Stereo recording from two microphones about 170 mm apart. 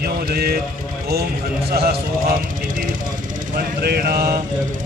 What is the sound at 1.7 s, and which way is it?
Speech, 60° right (ahead or behind).